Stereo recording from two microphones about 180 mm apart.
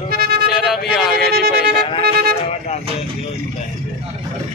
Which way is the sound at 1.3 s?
60° right (ahead or behind).